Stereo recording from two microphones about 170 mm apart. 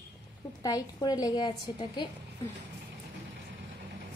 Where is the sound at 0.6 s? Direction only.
20° left (ahead or behind).